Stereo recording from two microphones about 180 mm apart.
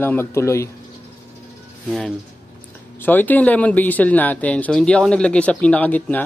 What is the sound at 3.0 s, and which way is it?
Speech, 10° left (ahead or behind).